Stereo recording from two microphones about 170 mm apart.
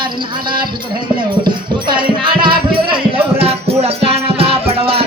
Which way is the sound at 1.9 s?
30° right (ahead or behind).